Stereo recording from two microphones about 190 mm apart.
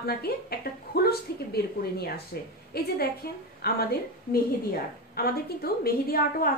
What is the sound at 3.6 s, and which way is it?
A woman's voice, 55° left (ahead or behind).